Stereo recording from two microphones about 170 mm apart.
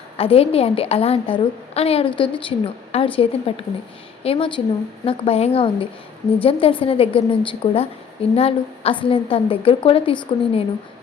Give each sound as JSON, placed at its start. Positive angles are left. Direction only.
{"t": 0.2, "sound": "a woman's voice", "side_deg": 35}